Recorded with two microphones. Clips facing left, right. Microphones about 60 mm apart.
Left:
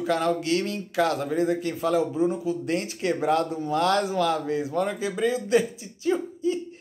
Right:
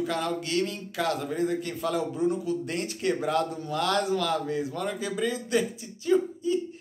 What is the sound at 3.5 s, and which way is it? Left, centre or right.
A man's voice, left.